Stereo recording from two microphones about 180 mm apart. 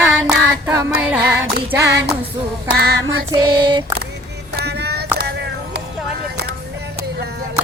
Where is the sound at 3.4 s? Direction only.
25° right (ahead or behind).